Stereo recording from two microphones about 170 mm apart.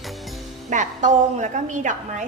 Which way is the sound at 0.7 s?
45° right (ahead or behind).